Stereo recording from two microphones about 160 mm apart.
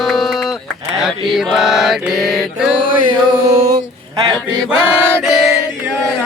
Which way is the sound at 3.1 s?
35° right (ahead or behind).